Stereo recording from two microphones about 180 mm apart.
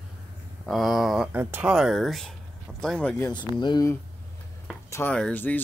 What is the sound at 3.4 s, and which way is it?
Speech, 25° left (ahead or behind).